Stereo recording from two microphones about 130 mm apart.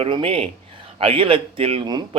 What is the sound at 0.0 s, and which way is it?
Speech, 45° right (ahead or behind).